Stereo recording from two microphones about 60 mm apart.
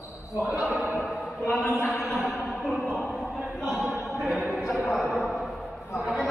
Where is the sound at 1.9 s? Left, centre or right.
Centre.